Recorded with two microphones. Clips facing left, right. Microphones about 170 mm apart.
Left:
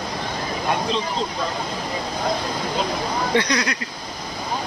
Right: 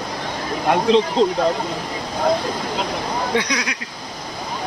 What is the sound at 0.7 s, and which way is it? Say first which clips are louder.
Speech: right 9 dB; 75° right (ahead or behind).